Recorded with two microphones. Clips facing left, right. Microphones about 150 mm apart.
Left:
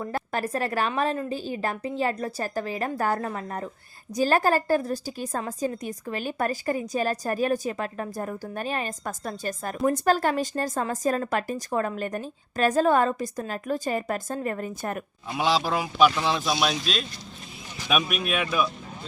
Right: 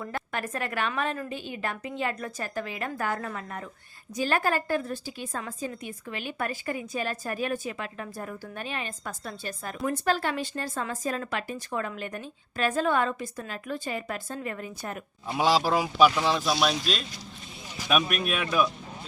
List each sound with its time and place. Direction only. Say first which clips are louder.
0.0 s a woman's voice: left 4 dB; 35° left (ahead or behind); by 15.0 s 50° left (ahead or behind)
15.3 s speech: right 1 dB; 10° right (ahead or behind)